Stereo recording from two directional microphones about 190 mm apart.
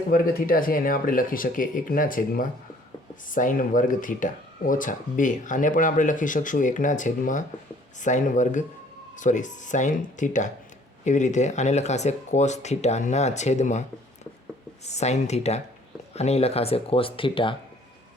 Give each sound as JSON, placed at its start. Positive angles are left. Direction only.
{"t": 0.1, "sound": "speech", "side_deg": 50}
{"t": 14.8, "sound": "speech", "side_deg": 35}